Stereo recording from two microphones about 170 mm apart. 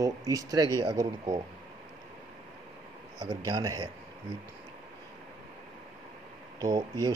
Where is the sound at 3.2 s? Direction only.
25° right (ahead or behind).